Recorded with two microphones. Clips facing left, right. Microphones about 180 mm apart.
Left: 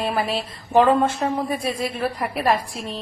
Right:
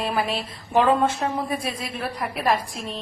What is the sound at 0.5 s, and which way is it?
Speech, centre (ahead or behind).